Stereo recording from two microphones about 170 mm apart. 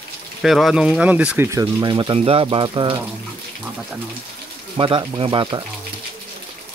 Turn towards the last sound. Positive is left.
turn(degrees=-25)  # may be behind; listen again after turning